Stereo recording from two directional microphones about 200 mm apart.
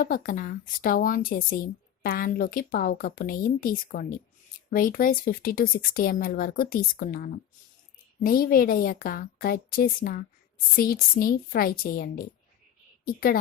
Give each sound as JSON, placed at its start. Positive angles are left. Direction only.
{"t": 0.0, "sound": "speech", "side_deg": 45}